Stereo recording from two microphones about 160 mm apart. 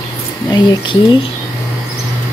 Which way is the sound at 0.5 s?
30° left (ahead or behind).